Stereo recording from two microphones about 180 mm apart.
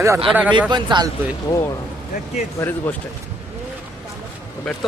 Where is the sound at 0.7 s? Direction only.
25° right (ahead or behind).